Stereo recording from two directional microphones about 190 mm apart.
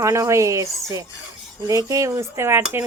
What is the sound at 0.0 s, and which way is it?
Speech, 15° right (ahead or behind).